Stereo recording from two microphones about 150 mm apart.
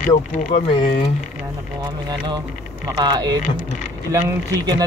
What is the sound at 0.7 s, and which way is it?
Speech, 35° left (ahead or behind).